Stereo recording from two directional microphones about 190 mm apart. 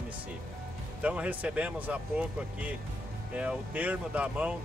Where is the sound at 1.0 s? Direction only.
5° right (ahead or behind).